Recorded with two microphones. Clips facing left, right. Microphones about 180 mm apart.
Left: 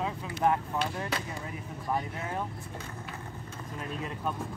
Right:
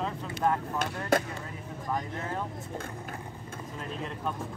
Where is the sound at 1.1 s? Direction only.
50° right (ahead or behind).